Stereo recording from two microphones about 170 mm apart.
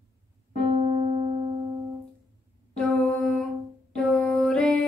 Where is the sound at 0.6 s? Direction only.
35° right (ahead or behind).